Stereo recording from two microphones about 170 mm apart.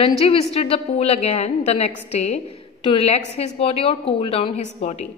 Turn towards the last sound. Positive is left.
turn(degrees=40)  # may be behind; listen again after turning